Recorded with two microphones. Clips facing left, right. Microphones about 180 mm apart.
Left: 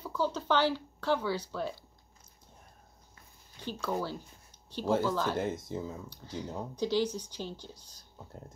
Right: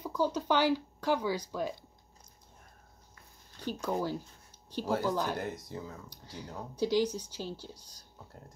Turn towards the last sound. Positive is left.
turn(degrees=-10)  # may be behind; listen again after turning